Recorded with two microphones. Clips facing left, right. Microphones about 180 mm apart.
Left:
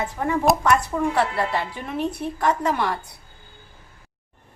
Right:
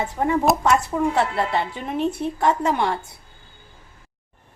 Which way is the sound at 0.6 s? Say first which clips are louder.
Right 1 dB; 25° right (ahead or behind).